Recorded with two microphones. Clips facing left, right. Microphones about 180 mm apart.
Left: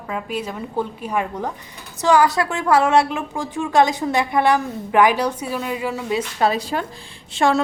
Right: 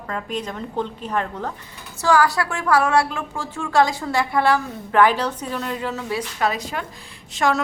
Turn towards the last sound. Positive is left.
turn(degrees=30)  # may be behind; listen again after turning